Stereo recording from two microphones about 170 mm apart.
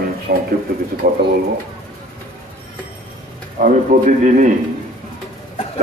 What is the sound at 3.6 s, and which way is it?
Speech, 55° right (ahead or behind).